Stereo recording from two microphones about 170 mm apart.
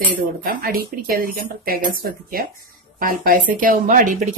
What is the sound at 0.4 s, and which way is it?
Speech, 55° right (ahead or behind).